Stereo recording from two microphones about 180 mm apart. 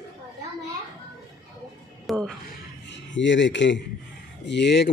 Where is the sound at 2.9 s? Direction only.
90° left.